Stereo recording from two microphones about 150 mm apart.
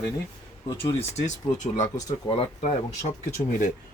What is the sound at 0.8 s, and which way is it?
Speech, 45° left (ahead or behind).